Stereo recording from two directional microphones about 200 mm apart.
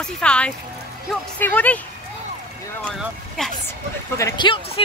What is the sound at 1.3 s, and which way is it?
Speech, 10° left (ahead or behind).